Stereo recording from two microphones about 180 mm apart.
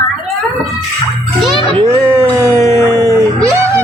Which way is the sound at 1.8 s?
15° right (ahead or behind).